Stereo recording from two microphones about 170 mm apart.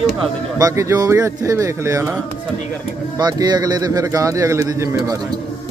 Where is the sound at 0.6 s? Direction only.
20° right (ahead or behind).